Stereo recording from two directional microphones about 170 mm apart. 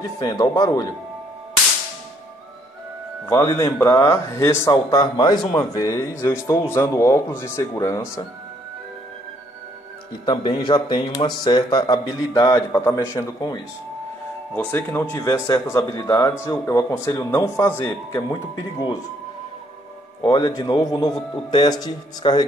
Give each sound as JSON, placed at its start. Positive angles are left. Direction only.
{"t": 0.2, "sound": "speech", "side_deg": 20}
{"t": 3.3, "sound": "speech", "side_deg": 15}
{"t": 10.2, "sound": "speech", "side_deg": 25}
{"t": 20.2, "sound": "speech", "side_deg": 25}